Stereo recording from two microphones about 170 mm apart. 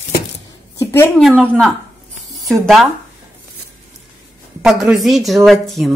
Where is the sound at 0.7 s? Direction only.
15° left (ahead or behind).